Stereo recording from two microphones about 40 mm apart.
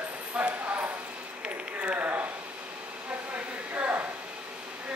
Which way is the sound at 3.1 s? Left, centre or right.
Right.